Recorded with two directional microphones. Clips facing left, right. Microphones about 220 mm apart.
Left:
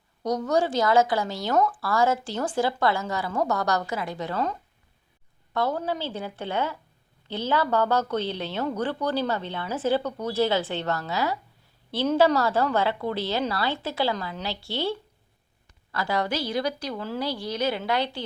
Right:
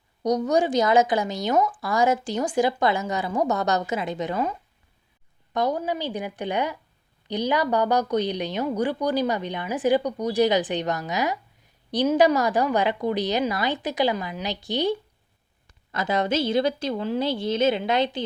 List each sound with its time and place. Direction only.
0.2 s a woman's voice: 15° right (ahead or behind)
5.5 s a woman's voice: 15° right (ahead or behind)